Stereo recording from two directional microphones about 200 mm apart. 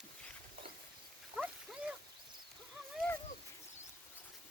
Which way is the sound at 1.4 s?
5° right (ahead or behind).